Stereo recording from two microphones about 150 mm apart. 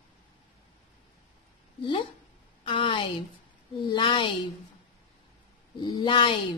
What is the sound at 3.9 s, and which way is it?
Speech, 30° left (ahead or behind).